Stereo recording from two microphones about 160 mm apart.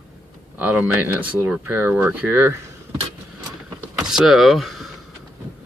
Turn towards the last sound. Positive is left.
turn(degrees=0)  # may be behind; listen again after turning